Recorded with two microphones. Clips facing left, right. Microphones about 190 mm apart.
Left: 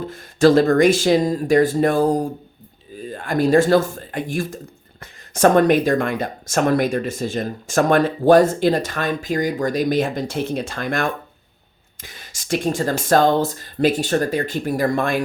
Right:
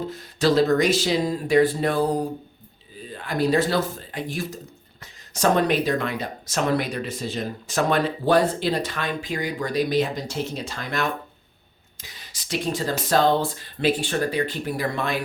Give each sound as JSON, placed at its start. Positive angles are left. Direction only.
{"t": 0.1, "sound": "speech", "side_deg": 50}